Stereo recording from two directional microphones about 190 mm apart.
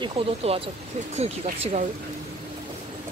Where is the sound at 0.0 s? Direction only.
30° right (ahead or behind).